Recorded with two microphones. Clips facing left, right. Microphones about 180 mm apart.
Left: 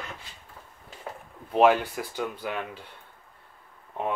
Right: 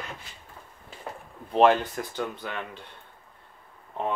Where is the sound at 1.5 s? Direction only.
10° left (ahead or behind).